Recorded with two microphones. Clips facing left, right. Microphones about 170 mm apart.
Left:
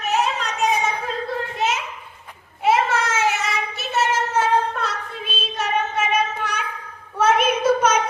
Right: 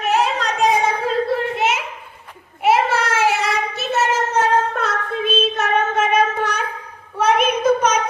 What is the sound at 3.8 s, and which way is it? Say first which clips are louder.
Child singing: right 2 dB; 40° right (ahead or behind).